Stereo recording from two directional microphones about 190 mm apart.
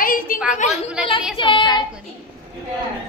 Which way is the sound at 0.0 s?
45° left (ahead or behind).